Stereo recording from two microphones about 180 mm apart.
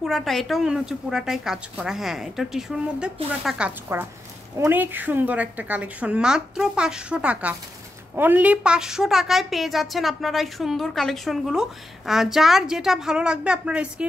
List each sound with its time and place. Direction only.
0.0 s a woman's voice: centre (ahead or behind)